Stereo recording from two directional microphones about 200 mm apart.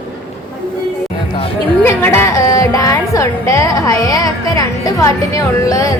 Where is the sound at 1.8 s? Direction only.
10° left (ahead or behind).